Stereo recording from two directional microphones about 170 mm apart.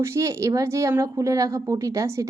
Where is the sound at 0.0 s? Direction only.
15° right (ahead or behind).